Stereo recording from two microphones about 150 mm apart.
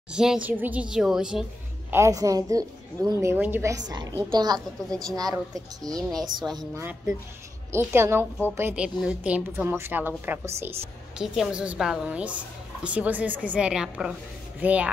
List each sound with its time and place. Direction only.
0.1 s a child's voice: 5° right (ahead or behind)
1.9 s a woman's voice: 20° right (ahead or behind)
3.8 s a woman's voice: 25° right (ahead or behind)
5.9 s a child's voice: centre (ahead or behind)
6.7 s a woman's voice: 15° right (ahead or behind)